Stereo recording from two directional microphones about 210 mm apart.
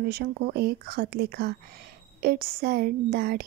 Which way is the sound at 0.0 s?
45° right (ahead or behind).